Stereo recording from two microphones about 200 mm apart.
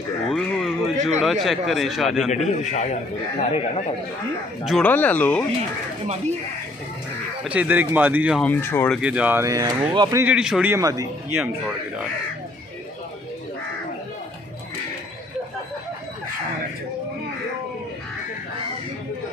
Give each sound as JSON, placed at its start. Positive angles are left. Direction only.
{"t": 0.3, "sound": "a man's voice", "side_deg": 0}
{"t": 2.3, "sound": "a man's voice", "side_deg": 35}
{"t": 4.6, "sound": "speech", "side_deg": 5}
{"t": 7.4, "sound": "speech", "side_deg": -5}
{"t": 8.4, "sound": "speech", "side_deg": 10}
{"t": 9.0, "sound": "speech", "side_deg": -5}